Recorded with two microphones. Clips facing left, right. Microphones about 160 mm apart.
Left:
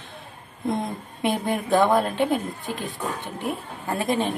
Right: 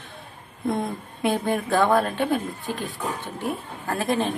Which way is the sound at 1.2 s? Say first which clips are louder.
Right 1 dB; 20° left (ahead or behind).